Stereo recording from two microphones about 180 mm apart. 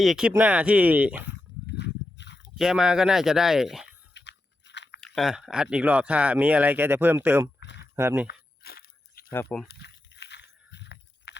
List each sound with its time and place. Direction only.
0.0 s speech: 5° right (ahead or behind)
1.6 s a sound: 75° left (ahead or behind)
2.6 s speech: 5° right (ahead or behind)
4.1 s biting: 75° left (ahead or behind)
4.9 s speech: 5° left (ahead or behind)
7.6 s a sound: 75° left (ahead or behind)
7.9 s speech: 10° right (ahead or behind)
8.3 s crunch: 60° left (ahead or behind)
9.3 s speech: 10° left (ahead or behind)
9.8 s a sound: 70° left (ahead or behind)